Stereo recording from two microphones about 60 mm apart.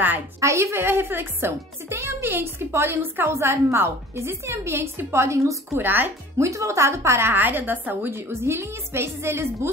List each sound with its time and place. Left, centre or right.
0.4 s a woman's voice: right
0.8 s a woman's voice: right
5.8 s speech: right
6.3 s a woman's voice: right
7.3 s speech: right
8.1 s a woman's voice: right